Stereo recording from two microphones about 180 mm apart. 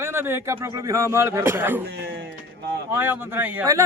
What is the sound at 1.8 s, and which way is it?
Speech, 65° right (ahead or behind).